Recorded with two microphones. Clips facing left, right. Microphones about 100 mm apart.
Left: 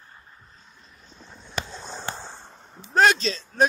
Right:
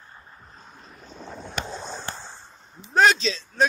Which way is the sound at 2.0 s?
20° left (ahead or behind).